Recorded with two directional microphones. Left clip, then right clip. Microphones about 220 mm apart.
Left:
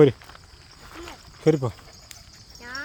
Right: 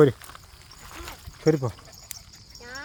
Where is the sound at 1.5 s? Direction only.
10° left (ahead or behind).